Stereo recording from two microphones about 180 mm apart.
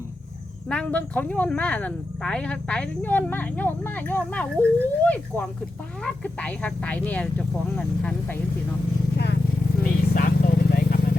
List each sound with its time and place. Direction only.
0.7 s speech: 5° left (ahead or behind)
9.1 s vehicle: 65° left (ahead or behind)
9.8 s vehicle: 55° left (ahead or behind)